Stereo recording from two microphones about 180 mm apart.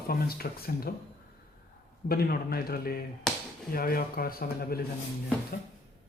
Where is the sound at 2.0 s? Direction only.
55° left (ahead or behind).